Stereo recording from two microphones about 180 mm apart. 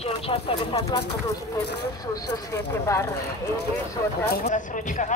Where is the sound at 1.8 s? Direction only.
20° left (ahead or behind).